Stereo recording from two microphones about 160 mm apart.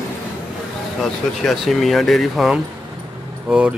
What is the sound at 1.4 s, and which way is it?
Speech, centre (ahead or behind).